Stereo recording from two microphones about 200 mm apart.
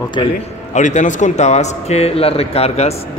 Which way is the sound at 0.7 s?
35° left (ahead or behind).